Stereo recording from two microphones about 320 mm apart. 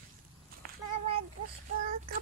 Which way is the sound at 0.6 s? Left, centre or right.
Right.